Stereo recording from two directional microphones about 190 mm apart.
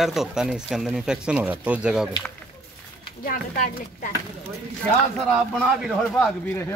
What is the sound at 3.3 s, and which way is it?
Speech, 45° left (ahead or behind).